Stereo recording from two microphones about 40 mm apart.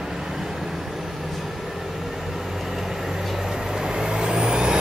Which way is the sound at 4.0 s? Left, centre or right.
Centre.